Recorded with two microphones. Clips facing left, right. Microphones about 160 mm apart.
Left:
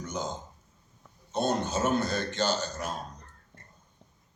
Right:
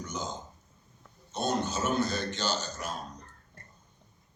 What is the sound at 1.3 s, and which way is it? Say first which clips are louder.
A man's voice: left 2 dB; 50° left (ahead or behind).